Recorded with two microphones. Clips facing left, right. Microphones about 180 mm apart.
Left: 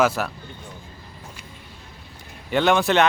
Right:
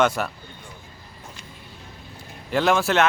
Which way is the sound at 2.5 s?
Centre (ahead or behind).